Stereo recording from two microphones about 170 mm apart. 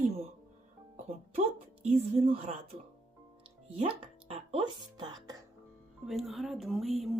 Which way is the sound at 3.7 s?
35° right (ahead or behind).